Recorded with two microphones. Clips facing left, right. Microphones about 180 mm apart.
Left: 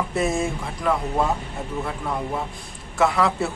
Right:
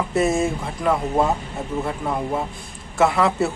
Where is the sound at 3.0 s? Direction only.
Centre (ahead or behind).